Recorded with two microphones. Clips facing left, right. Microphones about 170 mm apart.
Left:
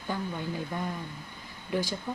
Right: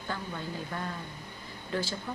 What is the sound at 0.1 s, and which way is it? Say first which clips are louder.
Speech: left 4 dB; 15° left (ahead or behind).